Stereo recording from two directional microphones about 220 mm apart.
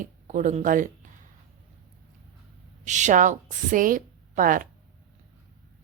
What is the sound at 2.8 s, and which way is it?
A woman's voice, 35° right (ahead or behind).